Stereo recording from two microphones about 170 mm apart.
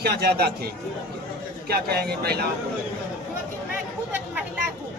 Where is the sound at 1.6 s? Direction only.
65° right (ahead or behind).